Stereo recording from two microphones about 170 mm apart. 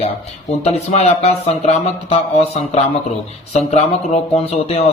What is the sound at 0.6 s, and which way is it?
A man's voice, 35° left (ahead or behind).